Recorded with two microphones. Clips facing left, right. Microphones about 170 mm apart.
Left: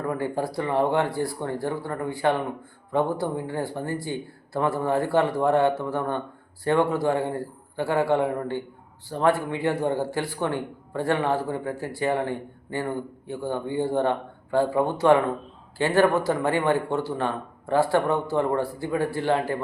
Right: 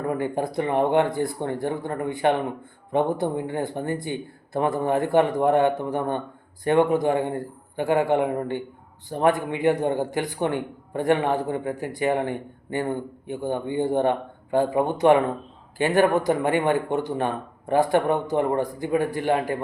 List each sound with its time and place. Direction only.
0.1 s a man's voice: 20° right (ahead or behind)